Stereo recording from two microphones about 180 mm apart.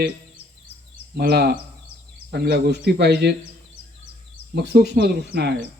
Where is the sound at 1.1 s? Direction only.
65° right (ahead or behind).